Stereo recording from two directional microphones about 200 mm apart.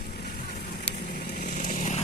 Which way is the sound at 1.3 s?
40° left (ahead or behind).